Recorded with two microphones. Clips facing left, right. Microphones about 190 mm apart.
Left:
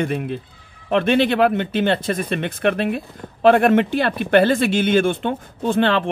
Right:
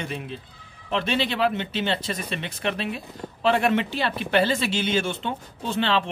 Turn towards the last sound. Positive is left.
turn(degrees=50)  # may be behind; listen again after turning